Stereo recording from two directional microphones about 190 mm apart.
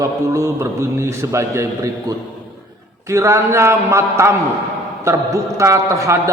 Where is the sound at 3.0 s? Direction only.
15° right (ahead or behind).